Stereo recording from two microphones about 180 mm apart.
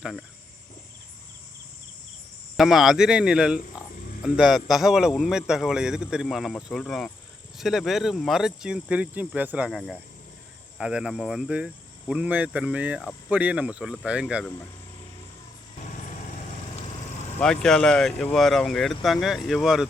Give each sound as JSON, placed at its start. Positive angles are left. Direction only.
{"t": 0.0, "sound": "a man's voice", "side_deg": 0}
{"t": 2.6, "sound": "a man's voice", "side_deg": 0}
{"t": 13.0, "sound": "a man's voice", "side_deg": 5}
{"t": 13.3, "sound": "speech", "side_deg": -10}
{"t": 17.4, "sound": "a man's voice", "side_deg": 5}